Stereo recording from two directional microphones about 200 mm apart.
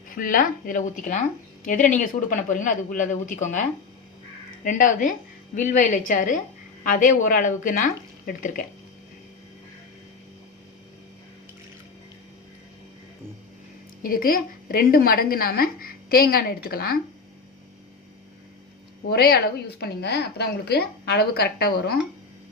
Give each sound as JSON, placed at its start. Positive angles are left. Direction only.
{"t": 0.2, "sound": "a woman's voice", "side_deg": 45}
{"t": 14.0, "sound": "a woman's voice", "side_deg": 45}
{"t": 19.1, "sound": "a woman's voice", "side_deg": 50}